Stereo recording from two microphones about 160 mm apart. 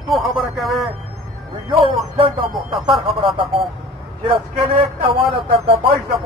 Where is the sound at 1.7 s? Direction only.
35° right (ahead or behind).